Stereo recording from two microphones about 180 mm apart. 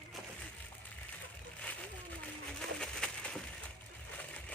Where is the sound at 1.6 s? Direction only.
5° left (ahead or behind).